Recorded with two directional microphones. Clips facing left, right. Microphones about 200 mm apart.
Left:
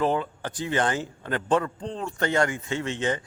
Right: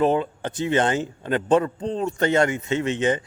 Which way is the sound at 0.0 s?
20° right (ahead or behind).